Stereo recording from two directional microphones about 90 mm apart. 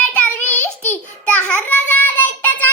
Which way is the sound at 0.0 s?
15° left (ahead or behind).